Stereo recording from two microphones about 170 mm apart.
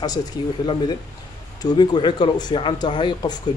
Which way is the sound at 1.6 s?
25° left (ahead or behind).